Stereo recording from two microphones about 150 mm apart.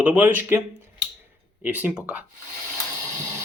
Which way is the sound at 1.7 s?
10° right (ahead or behind).